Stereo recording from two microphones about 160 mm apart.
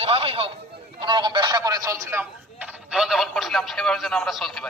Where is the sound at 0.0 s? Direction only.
35° right (ahead or behind).